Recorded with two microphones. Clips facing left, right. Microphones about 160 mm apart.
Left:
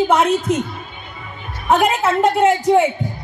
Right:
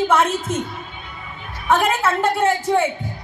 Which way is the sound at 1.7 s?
20° left (ahead or behind).